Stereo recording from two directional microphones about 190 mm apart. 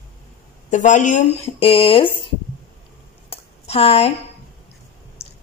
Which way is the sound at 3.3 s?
30° left (ahead or behind).